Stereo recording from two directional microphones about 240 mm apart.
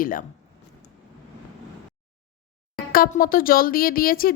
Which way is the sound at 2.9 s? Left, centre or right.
Left.